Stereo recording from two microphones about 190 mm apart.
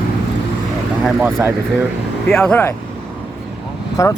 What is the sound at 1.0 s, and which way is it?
Speech, 10° right (ahead or behind).